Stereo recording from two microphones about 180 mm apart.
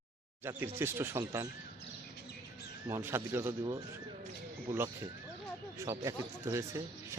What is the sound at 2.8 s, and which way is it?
Speech, 15° right (ahead or behind).